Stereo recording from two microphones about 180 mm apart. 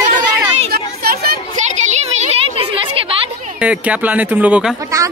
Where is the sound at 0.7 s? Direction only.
55° right (ahead or behind).